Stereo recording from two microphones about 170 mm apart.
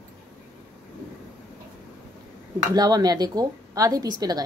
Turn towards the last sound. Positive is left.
turn(degrees=-25)  # may be behind; listen again after turning